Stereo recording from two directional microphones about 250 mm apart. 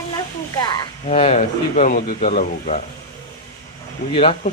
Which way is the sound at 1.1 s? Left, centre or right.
Left.